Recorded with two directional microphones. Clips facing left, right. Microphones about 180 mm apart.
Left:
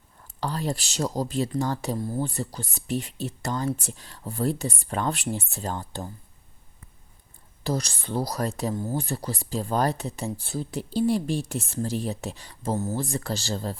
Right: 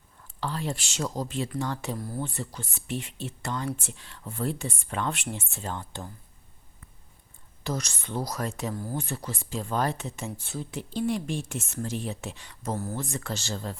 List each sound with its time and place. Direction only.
0.3 s speech: 40° left (ahead or behind)
2.0 s speech: 25° left (ahead or behind)
2.2 s speech: 35° left (ahead or behind)
7.6 s speech: 35° left (ahead or behind)
8.7 s speech: 25° left (ahead or behind)
9.0 s speech: 35° left (ahead or behind)
12.7 s speech: 20° left (ahead or behind)
13.0 s speech: 35° left (ahead or behind)